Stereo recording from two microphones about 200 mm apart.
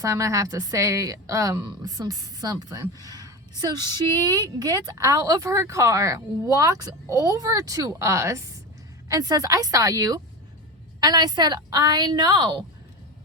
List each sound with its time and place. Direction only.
0.0 s a woman's voice: 15° right (ahead or behind)